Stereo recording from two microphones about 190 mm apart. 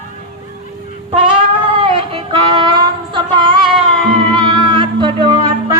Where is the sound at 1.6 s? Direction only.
30° right (ahead or behind).